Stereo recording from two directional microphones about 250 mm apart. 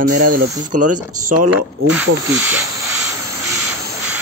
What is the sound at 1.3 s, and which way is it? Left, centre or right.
Speech, right.